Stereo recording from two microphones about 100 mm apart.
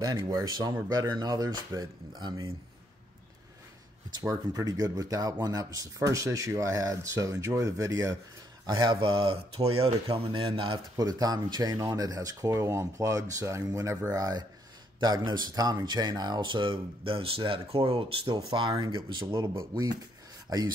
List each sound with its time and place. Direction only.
0.0 s speech: 35° right (ahead or behind)
4.2 s speech: 35° right (ahead or behind)
8.6 s speech: 50° right (ahead or behind); by 9.9 s 85° right
10.3 s speech: 65° right (ahead or behind)
11.0 s speech: 40° right (ahead or behind); by 18.1 s 70° right (ahead or behind)
18.2 s speech: 50° right (ahead or behind)
19.5 s speech: 35° right (ahead or behind)